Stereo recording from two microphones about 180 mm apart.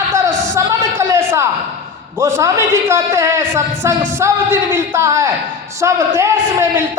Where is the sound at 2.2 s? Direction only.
15° right (ahead or behind).